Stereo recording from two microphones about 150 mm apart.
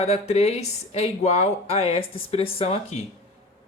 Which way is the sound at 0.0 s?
45° left (ahead or behind).